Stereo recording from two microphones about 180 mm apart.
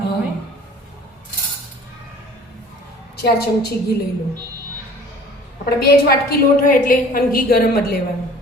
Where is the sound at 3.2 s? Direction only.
65° left (ahead or behind).